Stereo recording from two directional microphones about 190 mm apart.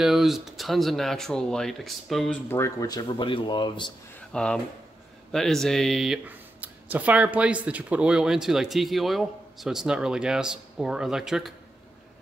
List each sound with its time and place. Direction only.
0.0 s speech: centre (ahead or behind)
2.5 s speech: 15° left (ahead or behind)
4.2 s speech: 5° left (ahead or behind)